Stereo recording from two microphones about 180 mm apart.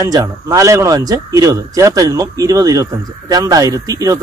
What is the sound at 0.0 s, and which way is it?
Speech, 20° right (ahead or behind).